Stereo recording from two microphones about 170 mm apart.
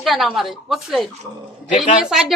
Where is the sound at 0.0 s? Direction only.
Centre (ahead or behind).